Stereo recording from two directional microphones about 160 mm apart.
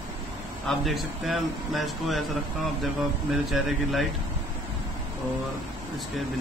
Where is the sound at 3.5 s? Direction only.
Centre (ahead or behind).